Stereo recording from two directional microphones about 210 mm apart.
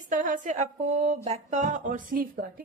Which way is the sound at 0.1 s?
40° right (ahead or behind).